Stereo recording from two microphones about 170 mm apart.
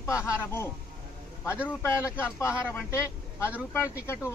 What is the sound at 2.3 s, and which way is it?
Speech, 15° left (ahead or behind).